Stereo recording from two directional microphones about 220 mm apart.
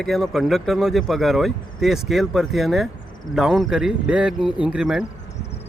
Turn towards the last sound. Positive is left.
turn(degrees=-5)  # may be behind; listen again after turning